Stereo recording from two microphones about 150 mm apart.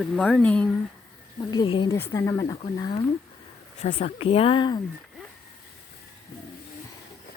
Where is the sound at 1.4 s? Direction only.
30° left (ahead or behind).